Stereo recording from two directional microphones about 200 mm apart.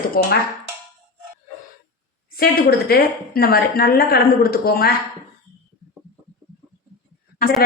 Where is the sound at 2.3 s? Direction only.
50° left (ahead or behind).